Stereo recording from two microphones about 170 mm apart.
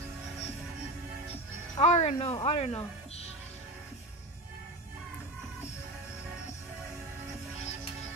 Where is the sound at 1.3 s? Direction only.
40° left (ahead or behind).